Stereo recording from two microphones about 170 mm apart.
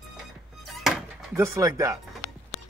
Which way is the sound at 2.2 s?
Centre (ahead or behind).